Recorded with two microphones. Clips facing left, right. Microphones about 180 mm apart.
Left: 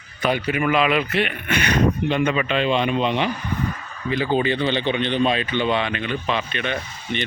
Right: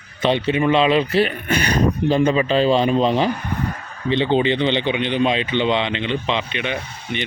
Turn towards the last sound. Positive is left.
turn(degrees=-15)  # may be behind; listen again after turning